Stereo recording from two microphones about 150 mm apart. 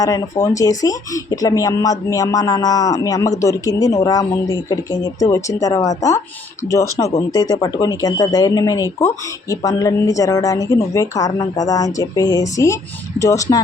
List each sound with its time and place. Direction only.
0.0 s speech: 25° left (ahead or behind)